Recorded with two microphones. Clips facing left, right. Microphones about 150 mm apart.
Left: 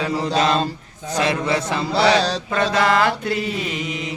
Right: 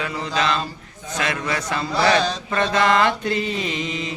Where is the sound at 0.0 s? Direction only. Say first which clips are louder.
Left 4 dB; 35° left (ahead or behind).